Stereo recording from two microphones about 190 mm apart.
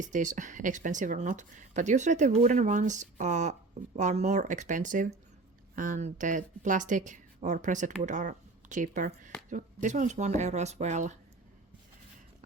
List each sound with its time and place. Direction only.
0.0 s speech: 40° right (ahead or behind)